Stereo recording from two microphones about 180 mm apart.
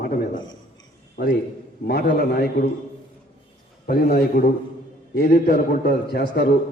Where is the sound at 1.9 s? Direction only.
60° left (ahead or behind).